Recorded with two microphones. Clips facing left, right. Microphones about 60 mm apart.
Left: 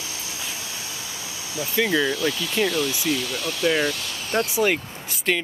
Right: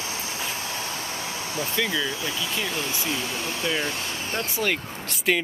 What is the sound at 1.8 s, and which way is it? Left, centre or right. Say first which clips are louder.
Speech: left 6 dB; left.